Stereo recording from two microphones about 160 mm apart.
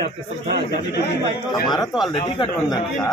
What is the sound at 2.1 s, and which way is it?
Speech, 30° left (ahead or behind).